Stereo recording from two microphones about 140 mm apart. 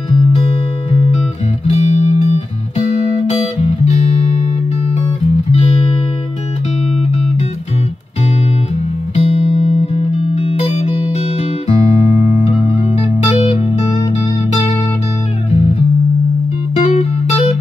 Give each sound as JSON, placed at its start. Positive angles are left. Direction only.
{"t": 1.7, "sound": "music", "side_deg": 50}
{"t": 9.1, "sound": "music", "side_deg": 45}
{"t": 12.3, "sound": "music", "side_deg": 45}
{"t": 16.7, "sound": "music", "side_deg": 50}